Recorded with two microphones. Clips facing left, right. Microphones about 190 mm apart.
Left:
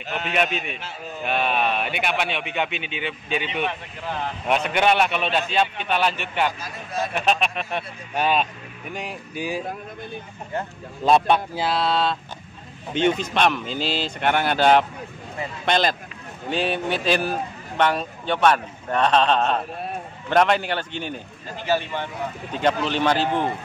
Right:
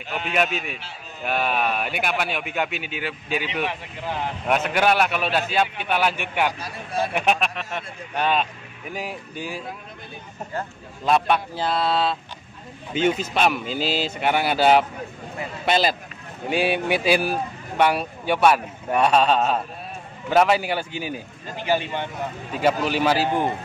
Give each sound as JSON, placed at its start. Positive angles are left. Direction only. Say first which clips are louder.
{"t": 0.1, "sound": "a man's voice", "louder": "even", "side_deg": 0}
{"t": 6.6, "sound": "speech", "louder": "right 2 dB", "side_deg": -30}
{"t": 7.2, "sound": "a man's voice", "louder": "even", "side_deg": -10}
{"t": 8.2, "sound": "speech", "louder": "left 1 dB", "side_deg": 5}
{"t": 11.1, "sound": "speech", "louder": "left 2 dB", "side_deg": 25}
{"t": 11.5, "sound": "a man's voice", "louder": "even", "side_deg": 5}
{"t": 22.5, "sound": "a man's voice", "louder": "right 1 dB", "side_deg": -5}